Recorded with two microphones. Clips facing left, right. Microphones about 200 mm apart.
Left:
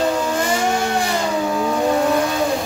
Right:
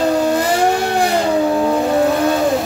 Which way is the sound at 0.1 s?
35° right (ahead or behind).